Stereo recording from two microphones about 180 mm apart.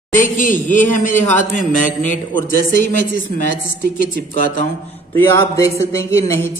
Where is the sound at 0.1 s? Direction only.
45° left (ahead or behind).